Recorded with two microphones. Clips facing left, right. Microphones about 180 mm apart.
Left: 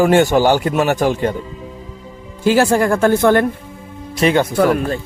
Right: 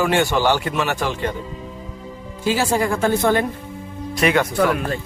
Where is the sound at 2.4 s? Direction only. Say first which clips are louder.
Left 6 dB; 55° left (ahead or behind).